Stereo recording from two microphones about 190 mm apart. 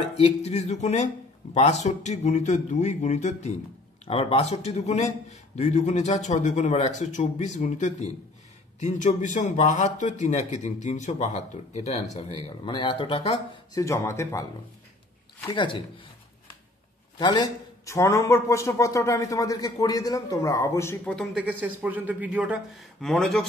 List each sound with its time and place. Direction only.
0.2 s a man's voice: 35° left (ahead or behind)
13.7 s a man's voice: 15° left (ahead or behind)
15.4 s speech: 25° left (ahead or behind)
17.2 s a man's voice: 25° left (ahead or behind); by 21.5 s 5° left (ahead or behind)
21.5 s speech: 10° right (ahead or behind)